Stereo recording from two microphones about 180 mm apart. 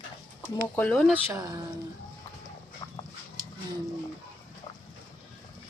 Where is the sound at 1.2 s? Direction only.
15° right (ahead or behind).